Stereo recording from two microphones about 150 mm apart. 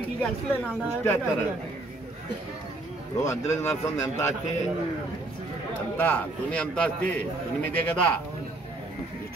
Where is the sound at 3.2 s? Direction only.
20° left (ahead or behind).